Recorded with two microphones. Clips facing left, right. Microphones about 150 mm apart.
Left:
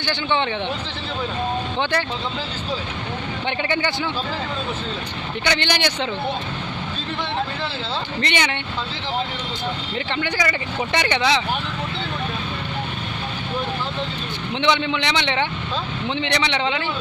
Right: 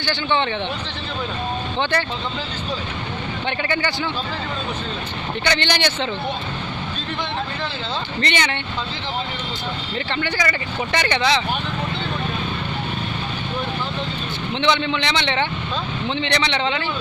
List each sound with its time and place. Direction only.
0.0 s speech: 15° left (ahead or behind)
1.8 s speech: 10° left (ahead or behind)
3.4 s speech: 20° left (ahead or behind)
5.4 s speech: 10° left (ahead or behind)
8.2 s speech: 15° left (ahead or behind)
9.9 s speech: 15° left (ahead or behind)
14.5 s speech: 15° left (ahead or behind)